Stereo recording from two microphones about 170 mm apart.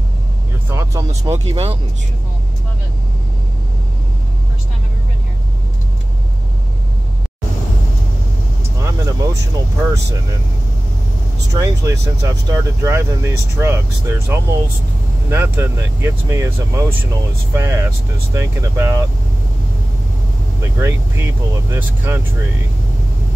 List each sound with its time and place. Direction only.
0.7 s speech: 20° right (ahead or behind)
1.5 s speech: 35° right (ahead or behind)
8.7 s vehicle: 20° right (ahead or behind)
11.5 s speech: 15° right (ahead or behind)
20.6 s speech: 15° right (ahead or behind)